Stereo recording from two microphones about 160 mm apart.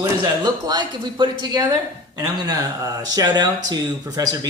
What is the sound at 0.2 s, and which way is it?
Speech, 25° right (ahead or behind).